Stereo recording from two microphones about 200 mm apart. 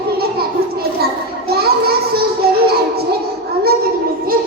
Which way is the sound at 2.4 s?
50° right (ahead or behind).